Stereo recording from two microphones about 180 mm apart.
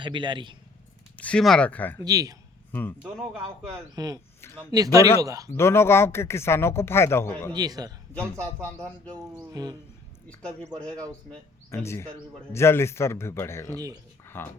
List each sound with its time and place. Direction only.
0.0 s a man's voice: 25° right (ahead or behind)
1.1 s speech: 5° left (ahead or behind)
2.0 s a man's voice: 20° right (ahead or behind)
3.9 s a man's voice: 20° right (ahead or behind)
4.4 s speech: 15° left (ahead or behind)
4.7 s a man's voice: 20° right (ahead or behind)
5.5 s speech: 15° left (ahead or behind)
7.5 s a man's voice: 20° right (ahead or behind)
8.4 s speech: 10° left (ahead or behind)
9.5 s a man's voice: 20° right (ahead or behind)
10.2 s speech: 5° left (ahead or behind)
13.7 s a man's voice: 20° right (ahead or behind)